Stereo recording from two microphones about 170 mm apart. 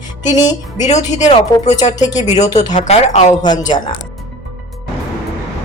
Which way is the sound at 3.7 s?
25° left (ahead or behind).